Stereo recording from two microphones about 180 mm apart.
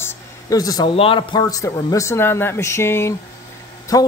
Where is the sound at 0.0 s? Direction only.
15° left (ahead or behind).